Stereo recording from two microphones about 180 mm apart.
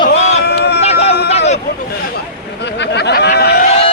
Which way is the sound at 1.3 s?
35° left (ahead or behind).